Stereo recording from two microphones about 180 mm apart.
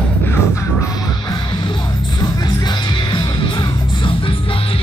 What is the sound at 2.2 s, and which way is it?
Music, 25° left (ahead or behind).